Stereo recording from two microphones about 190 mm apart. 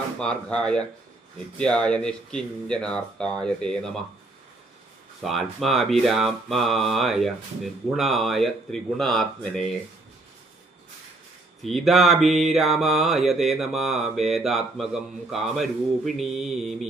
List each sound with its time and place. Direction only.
0.2 s mantra: 5° left (ahead or behind)
5.2 s mantra: centre (ahead or behind)
11.6 s mantra: centre (ahead or behind)